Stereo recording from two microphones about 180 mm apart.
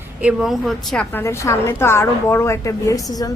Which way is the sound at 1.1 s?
15° left (ahead or behind).